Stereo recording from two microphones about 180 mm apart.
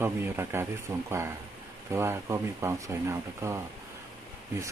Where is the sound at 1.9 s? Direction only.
15° right (ahead or behind).